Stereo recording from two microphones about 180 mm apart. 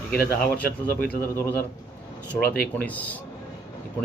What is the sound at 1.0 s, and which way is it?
Speech, 15° left (ahead or behind).